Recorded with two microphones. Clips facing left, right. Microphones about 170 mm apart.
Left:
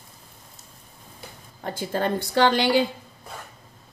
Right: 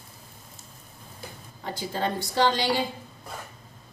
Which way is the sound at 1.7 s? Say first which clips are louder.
Left 4 dB; 55° left (ahead or behind).